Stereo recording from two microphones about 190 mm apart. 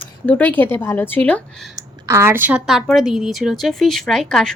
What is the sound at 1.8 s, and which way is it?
Speech, 15° right (ahead or behind).